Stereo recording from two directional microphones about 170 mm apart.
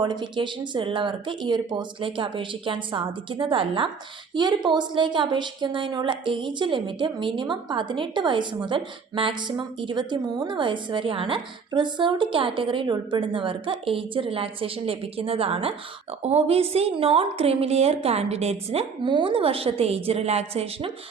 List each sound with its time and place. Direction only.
0.0 s a woman's voice: 25° right (ahead or behind)